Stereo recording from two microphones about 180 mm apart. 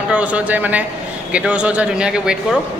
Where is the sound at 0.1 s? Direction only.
5° right (ahead or behind).